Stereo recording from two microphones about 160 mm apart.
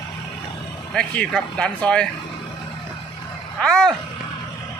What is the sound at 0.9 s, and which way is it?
Speech, 5° left (ahead or behind).